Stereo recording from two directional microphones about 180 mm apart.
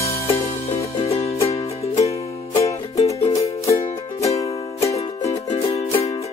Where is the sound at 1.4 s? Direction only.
35° left (ahead or behind).